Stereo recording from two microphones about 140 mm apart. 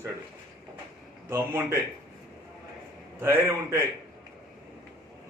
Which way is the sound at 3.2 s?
15° right (ahead or behind).